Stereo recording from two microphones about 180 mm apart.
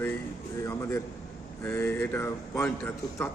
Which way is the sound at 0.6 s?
15° left (ahead or behind).